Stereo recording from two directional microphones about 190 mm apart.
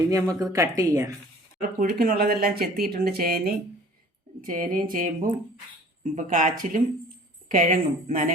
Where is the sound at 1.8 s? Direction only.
50° right (ahead or behind).